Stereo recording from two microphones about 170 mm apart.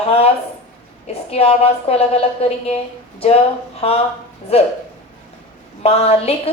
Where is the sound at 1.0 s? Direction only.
35° left (ahead or behind).